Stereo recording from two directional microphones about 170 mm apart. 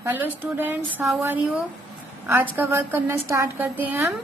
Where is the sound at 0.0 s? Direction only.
10° right (ahead or behind).